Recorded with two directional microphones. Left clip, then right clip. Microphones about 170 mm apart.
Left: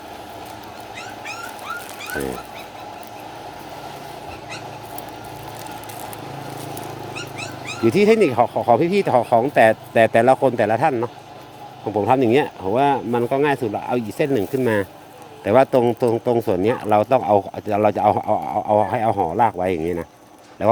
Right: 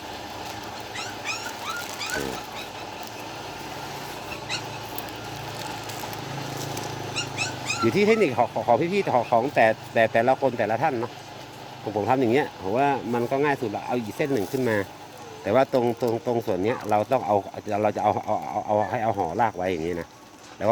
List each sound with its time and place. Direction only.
7.9 s speech: 60° left (ahead or behind)